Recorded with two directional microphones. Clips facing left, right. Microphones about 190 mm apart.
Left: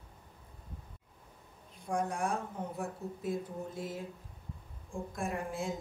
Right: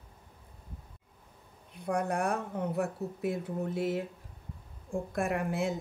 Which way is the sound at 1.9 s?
65° right (ahead or behind).